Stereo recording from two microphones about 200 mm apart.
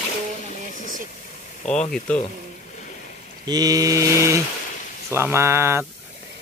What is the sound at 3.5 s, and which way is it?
Speech, 20° right (ahead or behind).